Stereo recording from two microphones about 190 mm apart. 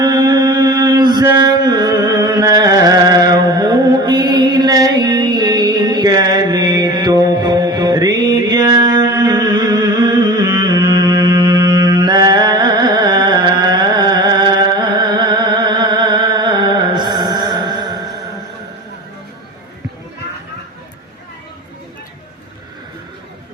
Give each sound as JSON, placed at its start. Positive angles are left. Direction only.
{"t": 0.0, "sound": "mantra", "side_deg": -20}